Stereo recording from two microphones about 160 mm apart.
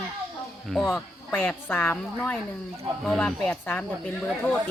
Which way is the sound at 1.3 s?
10° left (ahead or behind).